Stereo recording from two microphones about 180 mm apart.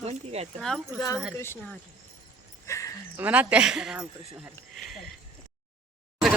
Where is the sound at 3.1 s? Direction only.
10° right (ahead or behind).